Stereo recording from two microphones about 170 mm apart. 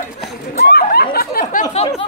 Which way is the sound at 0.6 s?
65° left (ahead or behind).